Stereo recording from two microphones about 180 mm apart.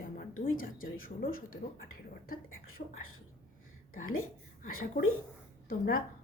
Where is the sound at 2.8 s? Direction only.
55° left (ahead or behind).